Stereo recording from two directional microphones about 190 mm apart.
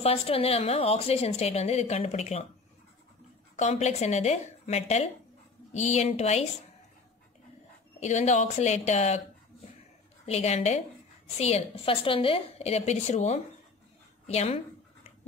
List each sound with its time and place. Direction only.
0.0 s a woman's voice: 30° left (ahead or behind)
3.5 s a woman's voice: 35° left (ahead or behind)
8.0 s a woman's voice: 35° left (ahead or behind)
10.2 s a woman's voice: 35° left (ahead or behind)